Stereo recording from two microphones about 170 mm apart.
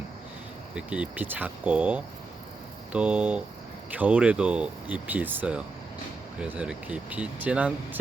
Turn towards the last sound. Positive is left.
turn(degrees=-10)  # may be behind; listen again after turning